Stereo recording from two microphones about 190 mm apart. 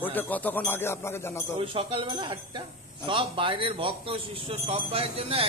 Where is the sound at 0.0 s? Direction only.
10° left (ahead or behind).